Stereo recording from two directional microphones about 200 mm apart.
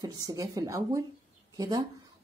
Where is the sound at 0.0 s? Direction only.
15° right (ahead or behind).